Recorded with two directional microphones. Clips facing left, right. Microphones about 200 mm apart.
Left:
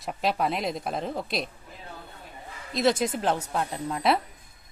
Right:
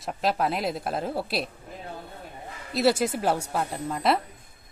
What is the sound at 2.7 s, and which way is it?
A woman's voice, 5° right (ahead or behind).